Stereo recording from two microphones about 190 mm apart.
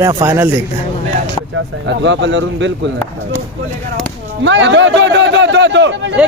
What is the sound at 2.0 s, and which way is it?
Speech, 75° right (ahead or behind).